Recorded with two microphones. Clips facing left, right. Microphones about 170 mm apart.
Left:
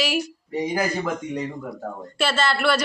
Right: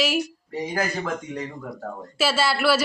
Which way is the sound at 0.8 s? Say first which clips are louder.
Left 2 dB; 10° left (ahead or behind).